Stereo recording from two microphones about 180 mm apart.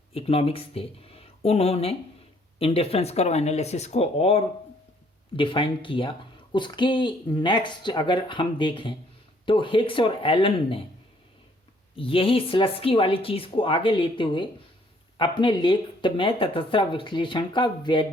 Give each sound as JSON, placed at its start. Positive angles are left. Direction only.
{"t": 0.1, "sound": "speech", "side_deg": 30}
{"t": 11.9, "sound": "speech", "side_deg": 30}